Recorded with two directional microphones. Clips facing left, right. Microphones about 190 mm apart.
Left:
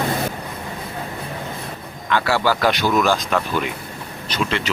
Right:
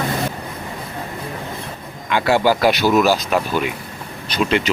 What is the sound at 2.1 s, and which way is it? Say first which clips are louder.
Speech: right 3 dB; 15° right (ahead or behind).